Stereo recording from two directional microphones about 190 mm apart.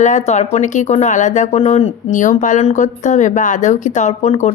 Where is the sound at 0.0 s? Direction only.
40° left (ahead or behind).